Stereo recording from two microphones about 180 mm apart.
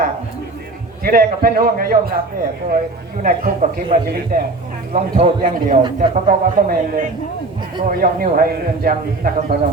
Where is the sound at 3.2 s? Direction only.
50° right (ahead or behind).